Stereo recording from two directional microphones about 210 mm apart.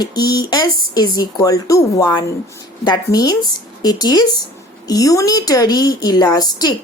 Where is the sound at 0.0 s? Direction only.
20° left (ahead or behind).